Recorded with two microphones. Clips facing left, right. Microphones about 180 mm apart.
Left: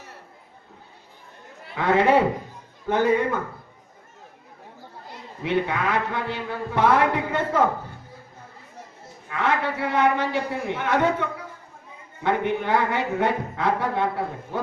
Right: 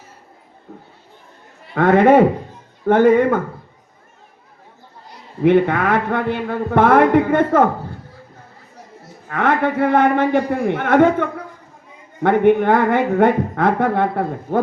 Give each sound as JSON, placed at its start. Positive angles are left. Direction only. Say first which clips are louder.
{"t": 1.7, "sound": "a man's voice", "louder": "right 7 dB", "side_deg": -55}
{"t": 5.4, "sound": "a man's voice", "louder": "right 10 dB", "side_deg": -55}
{"t": 9.2, "sound": "a man's voice", "louder": "right 7 dB", "side_deg": -55}